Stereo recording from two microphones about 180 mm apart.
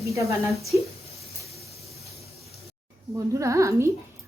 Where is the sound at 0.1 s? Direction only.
15° right (ahead or behind).